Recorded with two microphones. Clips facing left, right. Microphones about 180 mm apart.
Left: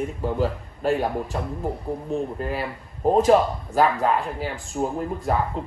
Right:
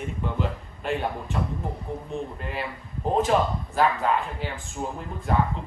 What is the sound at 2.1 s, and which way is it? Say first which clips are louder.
Speech: left 6 dB; centre (ahead or behind).